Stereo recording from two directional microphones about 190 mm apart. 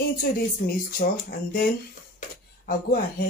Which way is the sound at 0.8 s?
50° left (ahead or behind).